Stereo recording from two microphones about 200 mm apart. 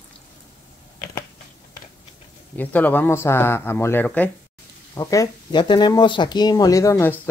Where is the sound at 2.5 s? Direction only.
10° left (ahead or behind).